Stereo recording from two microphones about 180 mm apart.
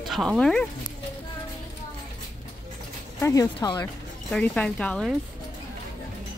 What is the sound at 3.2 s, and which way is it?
Speech, 20° left (ahead or behind).